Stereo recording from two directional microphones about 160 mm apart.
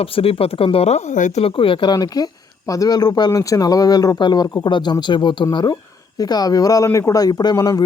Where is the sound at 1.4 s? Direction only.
35° left (ahead or behind).